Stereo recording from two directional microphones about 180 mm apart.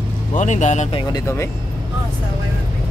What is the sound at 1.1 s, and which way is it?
Speech, 15° left (ahead or behind).